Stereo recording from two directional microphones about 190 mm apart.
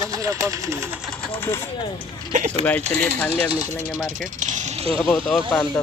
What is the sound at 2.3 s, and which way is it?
Speech, 40° right (ahead or behind).